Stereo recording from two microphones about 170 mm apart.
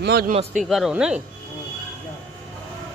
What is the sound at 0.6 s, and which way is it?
Speech, centre (ahead or behind).